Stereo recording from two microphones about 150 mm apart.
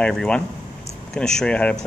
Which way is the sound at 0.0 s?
5° left (ahead or behind).